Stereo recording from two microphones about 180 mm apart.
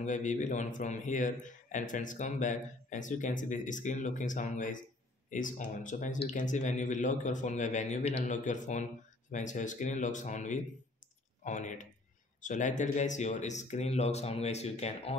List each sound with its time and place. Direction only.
0.0 s speech: 45° left (ahead or behind)